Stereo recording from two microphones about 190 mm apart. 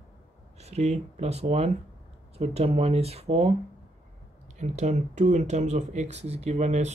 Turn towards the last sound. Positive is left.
turn(degrees=-35)  # may be behind; listen again after turning